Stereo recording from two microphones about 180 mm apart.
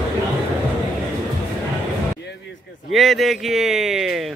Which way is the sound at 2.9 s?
Centre (ahead or behind).